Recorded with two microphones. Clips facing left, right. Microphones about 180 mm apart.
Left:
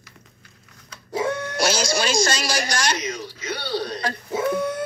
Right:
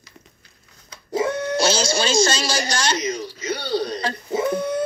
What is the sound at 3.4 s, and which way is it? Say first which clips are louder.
Speech: right 3 dB; 40° right (ahead or behind).